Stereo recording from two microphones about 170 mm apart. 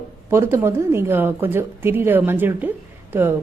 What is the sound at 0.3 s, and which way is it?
A woman's voice, 15° right (ahead or behind).